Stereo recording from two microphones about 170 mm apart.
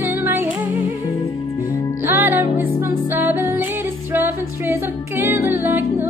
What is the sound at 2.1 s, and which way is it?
Music, 10° right (ahead or behind).